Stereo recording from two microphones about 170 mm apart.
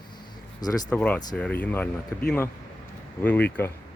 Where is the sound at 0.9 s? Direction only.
10° left (ahead or behind).